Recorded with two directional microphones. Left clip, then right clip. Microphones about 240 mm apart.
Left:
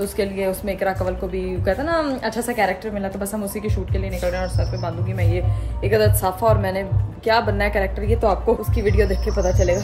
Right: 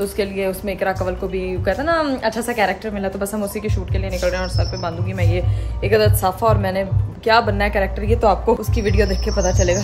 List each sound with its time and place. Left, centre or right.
0.0 s a man's voice: centre